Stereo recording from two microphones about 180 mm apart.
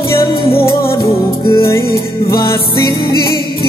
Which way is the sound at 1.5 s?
15° left (ahead or behind).